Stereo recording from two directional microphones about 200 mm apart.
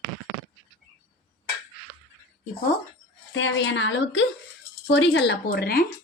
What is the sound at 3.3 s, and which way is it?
A woman's voice, 65° left (ahead or behind).